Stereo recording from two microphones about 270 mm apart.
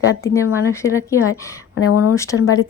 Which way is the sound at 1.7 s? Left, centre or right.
Left.